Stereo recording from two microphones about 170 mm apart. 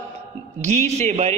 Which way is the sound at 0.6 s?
40° right (ahead or behind).